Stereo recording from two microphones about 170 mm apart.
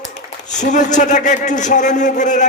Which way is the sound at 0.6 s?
45° left (ahead or behind).